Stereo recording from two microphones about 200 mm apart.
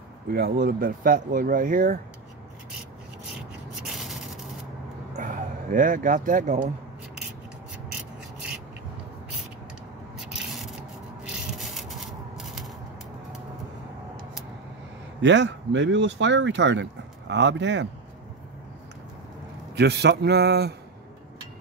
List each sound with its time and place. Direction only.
0.3 s speech: 50° right (ahead or behind)
3.8 s rub: centre (ahead or behind)
5.1 s a sound: 40° right (ahead or behind)
10.1 s a sound: 5° right (ahead or behind)
11.2 s rub: centre (ahead or behind)
15.2 s speech: 65° right (ahead or behind)
19.7 s speech: 55° right (ahead or behind)